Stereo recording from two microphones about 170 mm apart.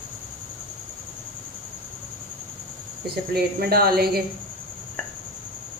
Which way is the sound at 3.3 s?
65° right (ahead or behind).